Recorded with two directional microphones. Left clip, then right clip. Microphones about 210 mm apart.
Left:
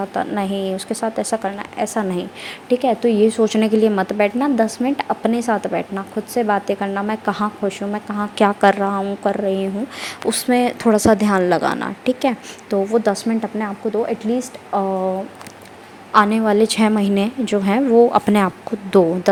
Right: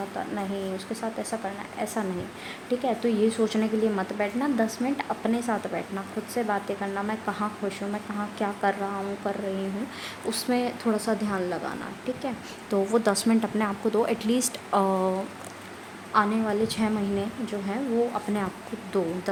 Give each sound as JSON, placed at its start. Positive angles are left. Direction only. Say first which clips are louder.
{"t": 0.2, "sound": "a woman's voice", "louder": "left 11 dB", "side_deg": 30}
{"t": 12.7, "sound": "speech", "louder": "left 6 dB", "side_deg": 10}
{"t": 16.1, "sound": "a woman's voice", "louder": "left 10 dB", "side_deg": 30}